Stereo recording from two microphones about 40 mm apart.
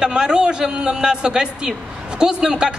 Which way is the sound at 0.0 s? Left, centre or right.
Centre.